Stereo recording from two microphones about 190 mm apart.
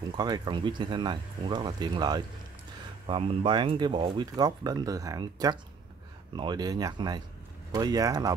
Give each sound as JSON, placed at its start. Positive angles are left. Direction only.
{"t": 0.1, "sound": "speech", "side_deg": -20}